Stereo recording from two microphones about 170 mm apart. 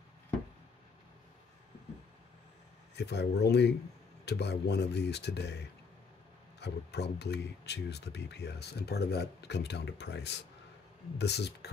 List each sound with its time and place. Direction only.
3.0 s speech: 75° left (ahead or behind)